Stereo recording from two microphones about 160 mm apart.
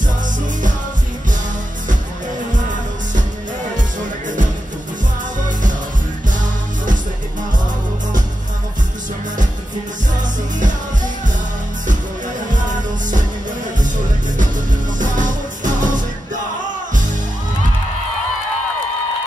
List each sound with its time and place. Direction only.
15.0 s music: 55° right (ahead or behind)